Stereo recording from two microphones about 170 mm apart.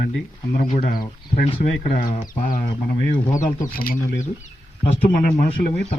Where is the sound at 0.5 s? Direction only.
50° left (ahead or behind).